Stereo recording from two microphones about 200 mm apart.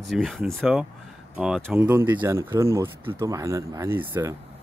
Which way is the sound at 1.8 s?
10° right (ahead or behind).